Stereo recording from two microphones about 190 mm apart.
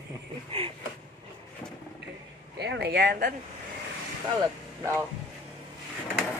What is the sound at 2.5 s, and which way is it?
Speech, 65° right (ahead or behind).